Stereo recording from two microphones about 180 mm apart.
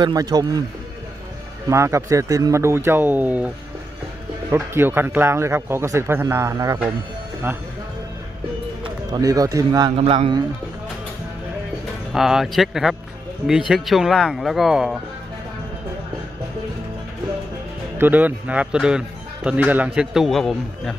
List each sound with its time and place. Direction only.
0.0 s speech: 20° right (ahead or behind)
1.7 s a man's voice: 15° right (ahead or behind)
9.1 s speech: 20° right (ahead or behind)
12.1 s a man's voice: centre (ahead or behind)
17.9 s a man's voice: 10° right (ahead or behind)